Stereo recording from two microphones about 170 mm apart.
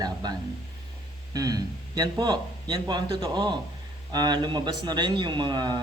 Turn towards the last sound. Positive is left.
turn(degrees=-25)  # may be behind; listen again after turning